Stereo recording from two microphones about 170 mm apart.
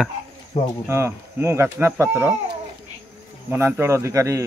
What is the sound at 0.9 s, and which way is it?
Speech, 15° right (ahead or behind).